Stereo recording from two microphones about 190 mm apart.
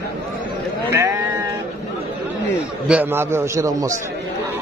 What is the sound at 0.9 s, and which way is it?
Speech, 15° right (ahead or behind).